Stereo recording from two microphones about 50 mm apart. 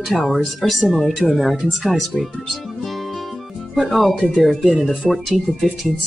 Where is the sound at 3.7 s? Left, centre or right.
Centre.